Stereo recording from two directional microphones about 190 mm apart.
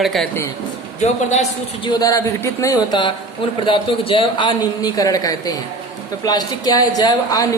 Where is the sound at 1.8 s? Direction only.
20° left (ahead or behind).